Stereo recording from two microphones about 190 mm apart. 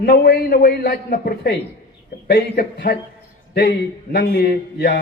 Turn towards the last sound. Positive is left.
turn(degrees=55)  # may be behind; listen again after turning